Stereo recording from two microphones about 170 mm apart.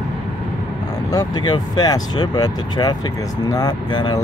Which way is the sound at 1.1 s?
25° left (ahead or behind).